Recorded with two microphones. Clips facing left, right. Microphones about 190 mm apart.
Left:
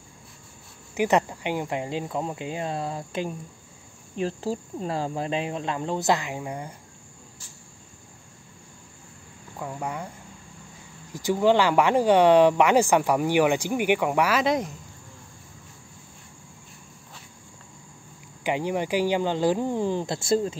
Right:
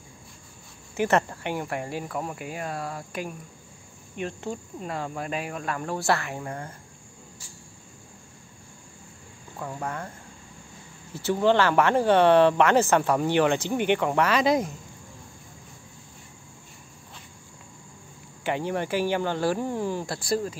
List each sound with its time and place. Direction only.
0.9 s speech: 15° left (ahead or behind)
9.6 s speech: 10° left (ahead or behind)
11.1 s speech: 15° left (ahead or behind)
18.4 s speech: 15° left (ahead or behind)